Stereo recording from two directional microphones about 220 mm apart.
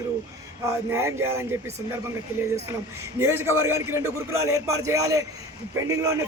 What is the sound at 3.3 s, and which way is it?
Speech, 10° right (ahead or behind).